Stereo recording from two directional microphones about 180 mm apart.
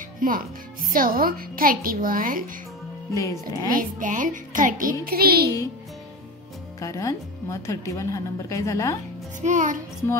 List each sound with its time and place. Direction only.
0.2 s speech: 50° right (ahead or behind)
3.1 s a woman's voice: 15° left (ahead or behind)
3.7 s a child's voice: 45° right (ahead or behind)
6.8 s a woman's voice: 15° left (ahead or behind)
9.4 s speech: 45° right (ahead or behind)